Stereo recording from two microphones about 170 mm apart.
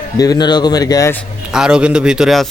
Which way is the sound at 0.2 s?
25° left (ahead or behind).